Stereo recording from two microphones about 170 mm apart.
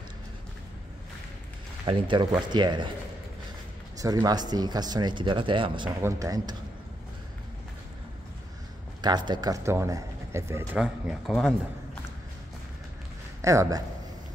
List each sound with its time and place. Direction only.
1.9 s speech: 30° right (ahead or behind)
4.0 s speech: 20° right (ahead or behind)
6.0 s speech: 20° right (ahead or behind)
9.0 s speech: 25° right (ahead or behind)
10.8 s a man's voice: centre (ahead or behind)
13.4 s speech: 20° right (ahead or behind)